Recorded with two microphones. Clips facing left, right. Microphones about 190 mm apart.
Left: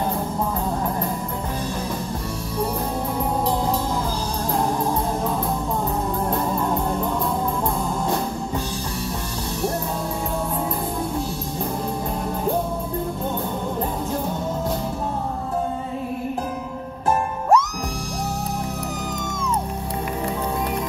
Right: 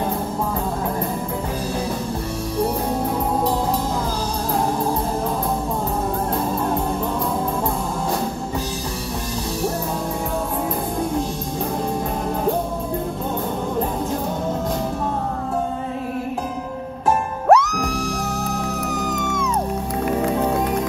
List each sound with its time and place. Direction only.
17.5 s music: 70° right (ahead or behind)